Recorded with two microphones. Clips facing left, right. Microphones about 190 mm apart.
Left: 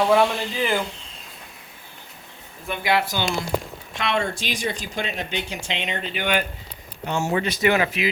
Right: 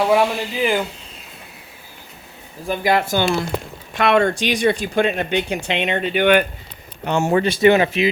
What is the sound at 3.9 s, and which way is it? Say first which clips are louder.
Speech: right 9 dB; 60° right (ahead or behind).